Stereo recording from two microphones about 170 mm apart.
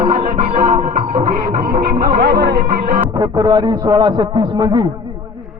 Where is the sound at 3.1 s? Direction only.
25° right (ahead or behind).